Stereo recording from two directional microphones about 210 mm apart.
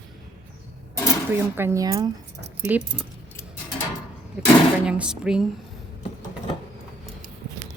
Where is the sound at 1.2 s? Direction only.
10° right (ahead or behind).